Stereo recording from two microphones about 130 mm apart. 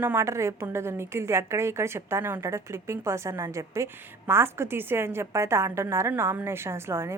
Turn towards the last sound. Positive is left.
turn(degrees=-20)  # may be behind; listen again after turning